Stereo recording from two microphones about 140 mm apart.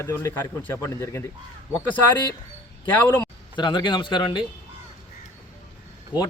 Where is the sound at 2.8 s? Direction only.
10° left (ahead or behind).